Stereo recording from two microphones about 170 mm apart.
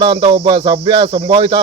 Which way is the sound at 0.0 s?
30° right (ahead or behind).